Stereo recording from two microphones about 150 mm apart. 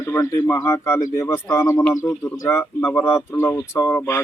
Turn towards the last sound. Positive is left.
turn(degrees=15)  # may be behind; listen again after turning